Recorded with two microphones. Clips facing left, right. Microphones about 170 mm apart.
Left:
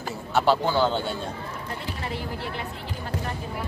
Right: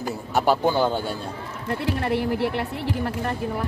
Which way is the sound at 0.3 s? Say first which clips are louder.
Right 1 dB; 15° right (ahead or behind).